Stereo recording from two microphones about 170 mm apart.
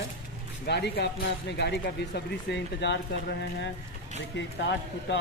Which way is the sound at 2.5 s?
90° left.